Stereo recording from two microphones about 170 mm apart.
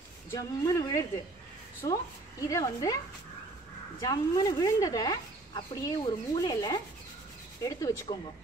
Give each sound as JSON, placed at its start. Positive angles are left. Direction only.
{"t": 0.3, "sound": "speech", "side_deg": 20}
{"t": 4.0, "sound": "speech", "side_deg": 20}